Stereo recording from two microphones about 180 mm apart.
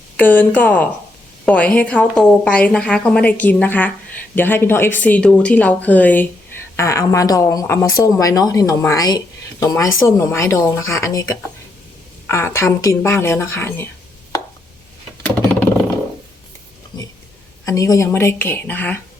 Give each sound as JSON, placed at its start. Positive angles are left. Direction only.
{"t": 0.2, "sound": "speech", "side_deg": 10}
{"t": 15.2, "sound": "a sound", "side_deg": 10}
{"t": 17.7, "sound": "speech", "side_deg": 20}